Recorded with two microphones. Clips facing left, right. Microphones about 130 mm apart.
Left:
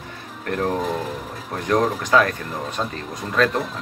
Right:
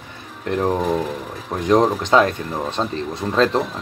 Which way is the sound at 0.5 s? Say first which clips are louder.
Right 3 dB; 20° right (ahead or behind).